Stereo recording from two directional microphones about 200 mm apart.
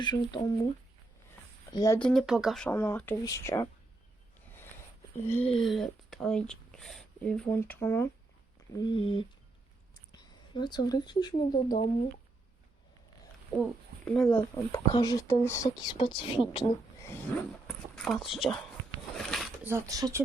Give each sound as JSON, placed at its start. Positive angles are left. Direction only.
{"t": 0.0, "sound": "speech", "side_deg": 25}
{"t": 1.7, "sound": "speech", "side_deg": 15}
{"t": 2.0, "sound": "speech", "side_deg": 0}
{"t": 5.2, "sound": "speech", "side_deg": 10}
{"t": 8.7, "sound": "speech", "side_deg": 25}
{"t": 10.1, "sound": "a sound", "side_deg": 20}
{"t": 10.8, "sound": "speech", "side_deg": 20}
{"t": 13.6, "sound": "speech", "side_deg": 5}
{"t": 14.3, "sound": "speech", "side_deg": 15}
{"t": 17.2, "sound": "speech", "side_deg": 10}
{"t": 19.1, "sound": "a sound", "side_deg": 0}
{"t": 19.6, "sound": "speech", "side_deg": -15}